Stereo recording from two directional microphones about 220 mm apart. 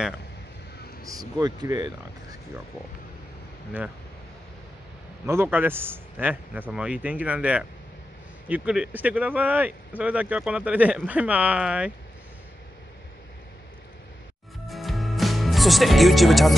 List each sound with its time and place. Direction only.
1.0 s speech: 15° right (ahead or behind)
5.2 s speech: 10° right (ahead or behind)
14.7 s music: centre (ahead or behind)